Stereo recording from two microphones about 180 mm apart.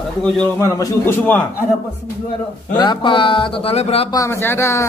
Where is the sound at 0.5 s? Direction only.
15° left (ahead or behind).